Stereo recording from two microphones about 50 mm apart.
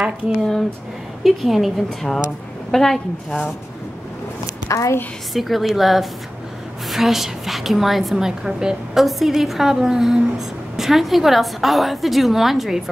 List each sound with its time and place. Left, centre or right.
0.3 s speech: centre
1.2 s a woman's voice: centre
4.6 s a woman's voice: left
5.3 s a woman's voice: centre
8.3 s a woman's voice: centre